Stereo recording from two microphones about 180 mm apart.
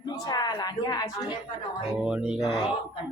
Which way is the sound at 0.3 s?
20° left (ahead or behind).